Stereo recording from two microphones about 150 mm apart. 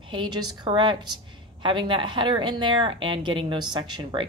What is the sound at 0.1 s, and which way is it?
A woman's voice, 35° right (ahead or behind).